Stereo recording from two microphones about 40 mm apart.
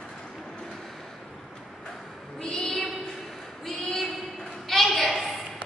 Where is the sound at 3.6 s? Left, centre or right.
Centre.